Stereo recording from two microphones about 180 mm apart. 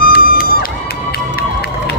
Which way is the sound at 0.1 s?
55° left (ahead or behind).